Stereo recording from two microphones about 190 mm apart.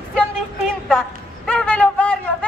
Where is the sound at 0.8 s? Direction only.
5° left (ahead or behind).